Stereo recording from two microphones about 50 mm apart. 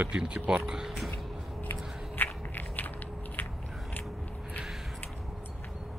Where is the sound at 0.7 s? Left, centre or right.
Centre.